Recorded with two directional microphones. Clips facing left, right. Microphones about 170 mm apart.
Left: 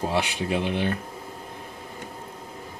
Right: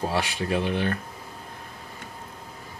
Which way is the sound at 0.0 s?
15° left (ahead or behind).